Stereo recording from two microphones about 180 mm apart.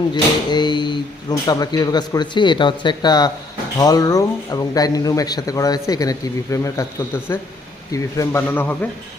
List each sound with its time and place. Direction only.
0.1 s a man's voice: 25° left (ahead or behind)